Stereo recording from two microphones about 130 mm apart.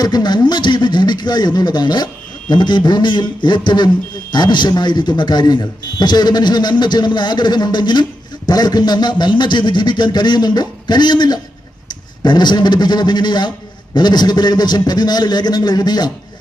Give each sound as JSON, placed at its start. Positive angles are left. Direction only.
{"t": 0.0, "sound": "a man's voice", "side_deg": 35}